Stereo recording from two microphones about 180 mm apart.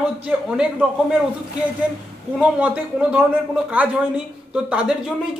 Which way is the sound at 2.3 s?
5° right (ahead or behind).